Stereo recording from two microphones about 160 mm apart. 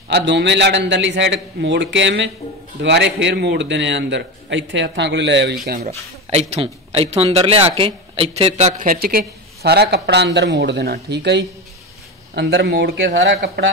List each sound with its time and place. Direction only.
0.1 s a man's voice: 90° right
5.9 s a man's voice: 40° right (ahead or behind); by 13.7 s 90° right